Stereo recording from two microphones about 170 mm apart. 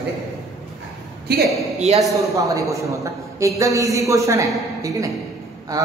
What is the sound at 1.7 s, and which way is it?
Speech, 40° right (ahead or behind).